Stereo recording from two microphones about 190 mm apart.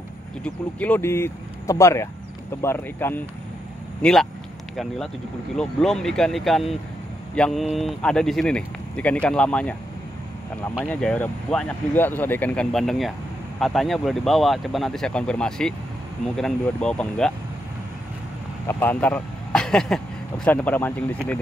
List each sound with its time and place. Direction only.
0.4 s speech: 5° left (ahead or behind)
4.0 s speech: centre (ahead or behind)
10.9 s speech: 5° left (ahead or behind)
18.7 s speech: 10° left (ahead or behind)